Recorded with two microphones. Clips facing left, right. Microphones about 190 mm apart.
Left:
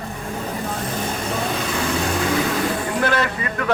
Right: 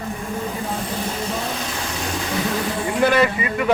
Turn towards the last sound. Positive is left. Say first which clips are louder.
# right 4 dB
turn(degrees=-15)  # may be behind; listen again after turning